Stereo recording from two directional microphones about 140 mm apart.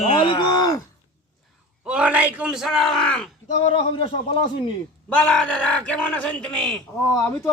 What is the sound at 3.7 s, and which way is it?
Speech, 40° left (ahead or behind).